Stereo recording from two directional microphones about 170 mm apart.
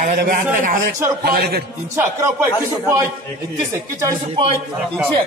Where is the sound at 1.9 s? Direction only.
15° right (ahead or behind).